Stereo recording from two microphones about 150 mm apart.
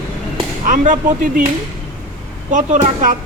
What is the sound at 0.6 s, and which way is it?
Speech, 60° right (ahead or behind).